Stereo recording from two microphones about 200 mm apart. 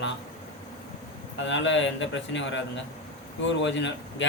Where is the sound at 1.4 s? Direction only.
65° left (ahead or behind).